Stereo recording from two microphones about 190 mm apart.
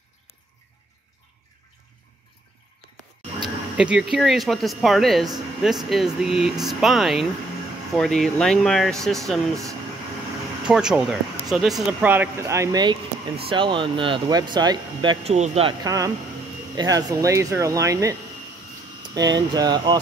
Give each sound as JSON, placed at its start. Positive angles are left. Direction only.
{"t": 3.7, "sound": "speech", "side_deg": -5}
{"t": 10.7, "sound": "speech", "side_deg": -5}
{"t": 15.3, "sound": "speech", "side_deg": -35}
{"t": 15.8, "sound": "speech", "side_deg": -20}
{"t": 19.1, "sound": "speech", "side_deg": -20}